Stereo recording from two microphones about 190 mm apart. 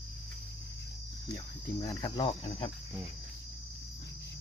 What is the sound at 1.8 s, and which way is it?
Cricket, 25° left (ahead or behind).